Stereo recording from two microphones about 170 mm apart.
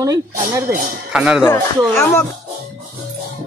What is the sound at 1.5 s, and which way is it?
Speech, 15° left (ahead or behind).